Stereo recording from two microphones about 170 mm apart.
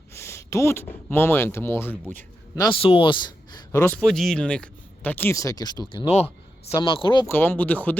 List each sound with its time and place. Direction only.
0.1 s speech: 15° left (ahead or behind)
2.6 s a man's voice: 30° left (ahead or behind)
3.7 s a man's voice: 10° left (ahead or behind); by 6.1 s 25° left (ahead or behind)
6.1 s a sound: 40° left (ahead or behind)
6.7 s a man's voice: 30° left (ahead or behind)
7.3 s speech: 10° left (ahead or behind)